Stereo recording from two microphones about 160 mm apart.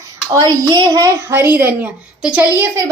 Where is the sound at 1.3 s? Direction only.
15° right (ahead or behind).